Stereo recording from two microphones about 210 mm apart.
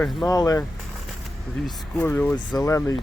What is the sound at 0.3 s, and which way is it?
Speech, 15° left (ahead or behind).